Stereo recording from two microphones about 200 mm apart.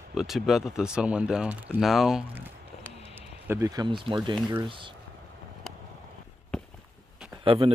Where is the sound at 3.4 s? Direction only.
15° right (ahead or behind).